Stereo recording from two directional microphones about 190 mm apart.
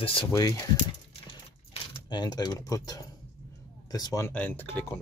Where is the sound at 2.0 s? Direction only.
20° left (ahead or behind).